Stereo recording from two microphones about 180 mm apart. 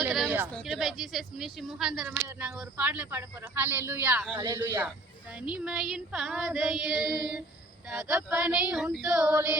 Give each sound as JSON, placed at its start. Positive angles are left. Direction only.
{"t": 0.0, "sound": "a sound", "side_deg": -5}
{"t": 0.5, "sound": "child singing", "side_deg": 0}
{"t": 2.4, "sound": "speech", "side_deg": -5}
{"t": 5.4, "sound": "child singing", "side_deg": -5}